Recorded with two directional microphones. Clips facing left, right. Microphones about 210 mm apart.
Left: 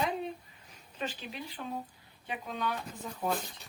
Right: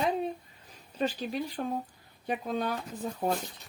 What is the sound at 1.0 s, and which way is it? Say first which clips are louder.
Speech: right 8 dB; 40° right (ahead or behind).